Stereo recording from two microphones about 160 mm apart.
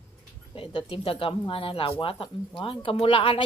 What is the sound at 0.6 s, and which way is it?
Speech, 35° left (ahead or behind).